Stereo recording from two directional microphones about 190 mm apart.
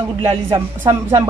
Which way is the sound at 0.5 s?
15° right (ahead or behind).